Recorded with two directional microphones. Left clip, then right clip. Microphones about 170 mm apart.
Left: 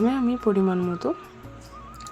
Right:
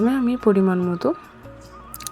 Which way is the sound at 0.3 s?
20° right (ahead or behind).